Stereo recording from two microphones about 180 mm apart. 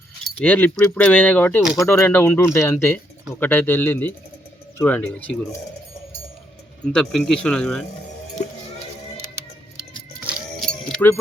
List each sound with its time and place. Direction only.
0.3 s speech: 10° left (ahead or behind)
6.9 s speech: 5° left (ahead or behind)
10.2 s music: 5° right (ahead or behind)
10.7 s music: 5° left (ahead or behind)